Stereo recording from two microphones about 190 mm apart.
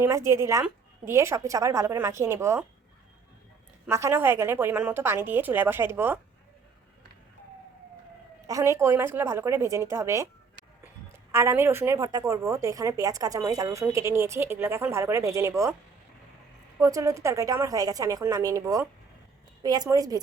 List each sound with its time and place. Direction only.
0.0 s a woman's voice: 15° right (ahead or behind)
3.8 s a woman's voice: 15° right (ahead or behind)
8.4 s a woman's voice: 15° right (ahead or behind)
11.3 s a woman's voice: 15° right (ahead or behind)
16.8 s a woman's voice: 15° right (ahead or behind)